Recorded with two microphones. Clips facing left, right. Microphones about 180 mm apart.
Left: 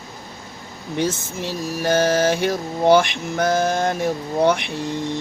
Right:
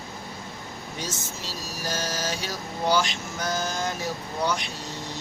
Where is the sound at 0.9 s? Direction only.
60° left (ahead or behind).